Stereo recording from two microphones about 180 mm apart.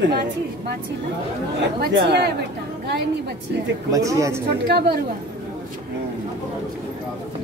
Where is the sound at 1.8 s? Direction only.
65° right (ahead or behind).